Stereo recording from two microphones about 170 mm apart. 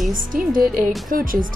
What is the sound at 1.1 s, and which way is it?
Speech, 55° right (ahead or behind).